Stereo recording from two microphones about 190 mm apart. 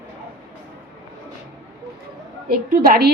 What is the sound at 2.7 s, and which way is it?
Speech, 50° right (ahead or behind).